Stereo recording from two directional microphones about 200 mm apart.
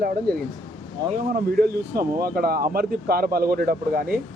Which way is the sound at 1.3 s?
50° right (ahead or behind).